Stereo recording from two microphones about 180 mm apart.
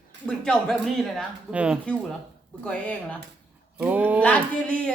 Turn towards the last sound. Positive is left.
turn(degrees=5)  # may be behind; listen again after turning